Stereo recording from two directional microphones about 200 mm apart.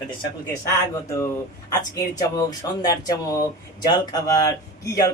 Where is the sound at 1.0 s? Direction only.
15° left (ahead or behind).